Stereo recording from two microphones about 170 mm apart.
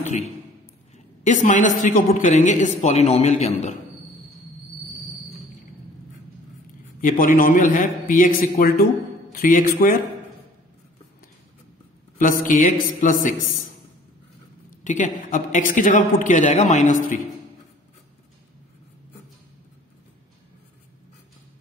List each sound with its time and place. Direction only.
0.9 s a woman's voice: 45° left (ahead or behind)
7.0 s a woman's voice: 55° left (ahead or behind)
12.2 s a woman's voice: 50° left (ahead or behind)
14.8 s a woman's voice: 50° left (ahead or behind)